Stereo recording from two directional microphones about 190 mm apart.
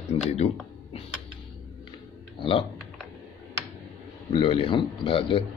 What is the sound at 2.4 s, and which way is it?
Speech, 30° left (ahead or behind).